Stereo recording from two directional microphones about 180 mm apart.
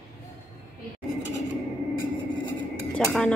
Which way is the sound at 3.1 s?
5° left (ahead or behind).